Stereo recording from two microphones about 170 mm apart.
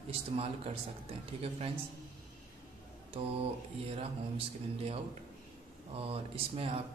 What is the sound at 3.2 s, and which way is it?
Speech, 35° right (ahead or behind).